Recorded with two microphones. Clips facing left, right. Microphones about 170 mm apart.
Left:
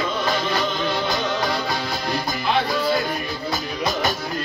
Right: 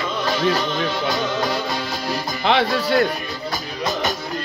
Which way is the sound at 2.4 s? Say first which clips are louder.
Right 3 dB; 75° right (ahead or behind).